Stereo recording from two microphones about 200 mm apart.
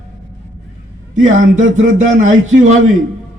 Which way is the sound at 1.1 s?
40° right (ahead or behind).